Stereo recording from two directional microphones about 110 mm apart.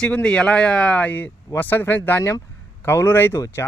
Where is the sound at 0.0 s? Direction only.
10° left (ahead or behind).